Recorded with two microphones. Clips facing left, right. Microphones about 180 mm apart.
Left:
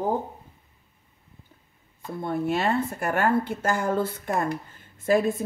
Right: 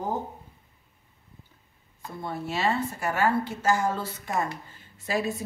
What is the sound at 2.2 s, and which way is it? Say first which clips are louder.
A woman's voice: left 3 dB; 55° left (ahead or behind).